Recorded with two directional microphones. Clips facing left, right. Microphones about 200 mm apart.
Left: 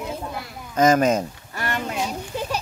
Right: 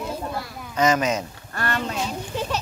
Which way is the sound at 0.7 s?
50° left (ahead or behind).